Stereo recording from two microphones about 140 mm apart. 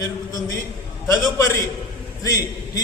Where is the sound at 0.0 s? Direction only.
25° left (ahead or behind).